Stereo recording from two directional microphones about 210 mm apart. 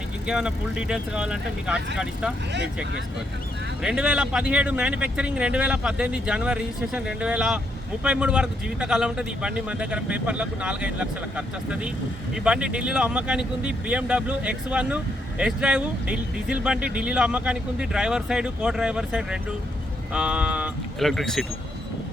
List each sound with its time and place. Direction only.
0.3 s speech: 5° right (ahead or behind)
3.8 s speech: 5° right (ahead or behind)